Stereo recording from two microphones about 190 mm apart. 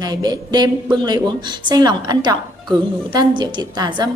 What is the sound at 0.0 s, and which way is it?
A woman's voice, 20° right (ahead or behind).